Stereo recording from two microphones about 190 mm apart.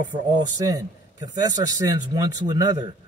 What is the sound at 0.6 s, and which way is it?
A man's voice, 20° right (ahead or behind).